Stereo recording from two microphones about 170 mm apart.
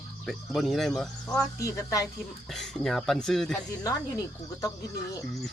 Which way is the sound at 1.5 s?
20° left (ahead or behind).